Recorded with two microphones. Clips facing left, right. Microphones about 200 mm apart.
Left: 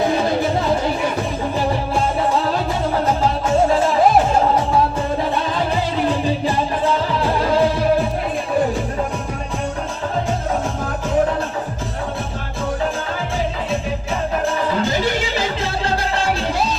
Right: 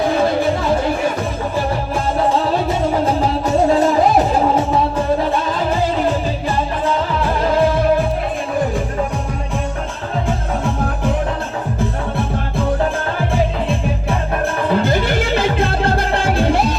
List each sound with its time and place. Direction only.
14.7 s music: 55° right (ahead or behind)